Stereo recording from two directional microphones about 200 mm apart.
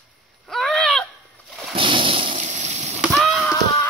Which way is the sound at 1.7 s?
25° right (ahead or behind).